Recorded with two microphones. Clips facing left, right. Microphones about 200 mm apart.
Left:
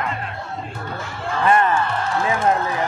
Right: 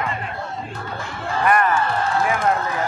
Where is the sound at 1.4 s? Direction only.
25° left (ahead or behind).